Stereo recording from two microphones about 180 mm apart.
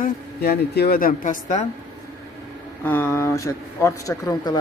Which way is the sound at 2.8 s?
10° left (ahead or behind).